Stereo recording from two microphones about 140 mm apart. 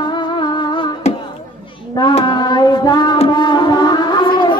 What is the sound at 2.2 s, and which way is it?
Child singing, 30° left (ahead or behind).